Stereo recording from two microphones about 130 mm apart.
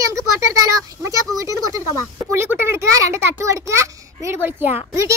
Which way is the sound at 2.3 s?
20° right (ahead or behind).